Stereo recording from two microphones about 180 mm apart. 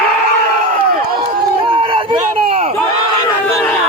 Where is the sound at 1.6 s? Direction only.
30° right (ahead or behind).